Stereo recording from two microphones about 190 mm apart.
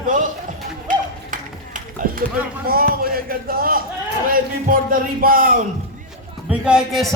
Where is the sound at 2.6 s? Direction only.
50° right (ahead or behind).